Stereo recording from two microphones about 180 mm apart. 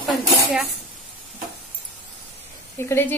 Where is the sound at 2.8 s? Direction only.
15° left (ahead or behind).